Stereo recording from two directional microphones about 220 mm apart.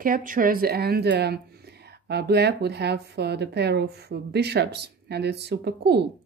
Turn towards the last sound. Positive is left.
turn(degrees=-50)  # may be behind; listen again after turning